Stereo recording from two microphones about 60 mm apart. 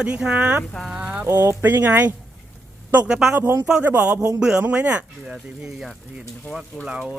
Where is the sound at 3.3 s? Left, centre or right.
Right.